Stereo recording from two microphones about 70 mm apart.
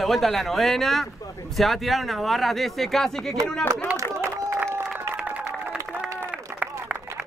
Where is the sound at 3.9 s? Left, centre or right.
Right.